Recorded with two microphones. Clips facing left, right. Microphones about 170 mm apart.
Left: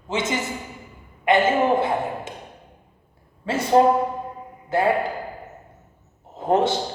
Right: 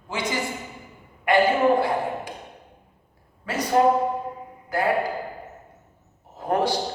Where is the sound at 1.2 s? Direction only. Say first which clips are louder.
Even; 20° left (ahead or behind).